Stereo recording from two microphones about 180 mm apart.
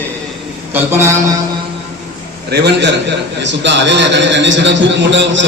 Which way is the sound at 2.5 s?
70° right (ahead or behind).